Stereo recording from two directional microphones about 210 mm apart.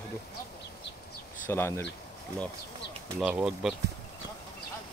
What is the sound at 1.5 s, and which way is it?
Speech, 10° left (ahead or behind).